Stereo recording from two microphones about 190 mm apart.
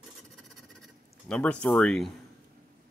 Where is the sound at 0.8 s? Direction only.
5° left (ahead or behind).